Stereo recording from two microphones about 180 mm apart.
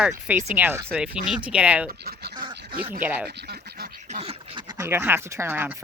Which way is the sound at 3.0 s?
10° right (ahead or behind).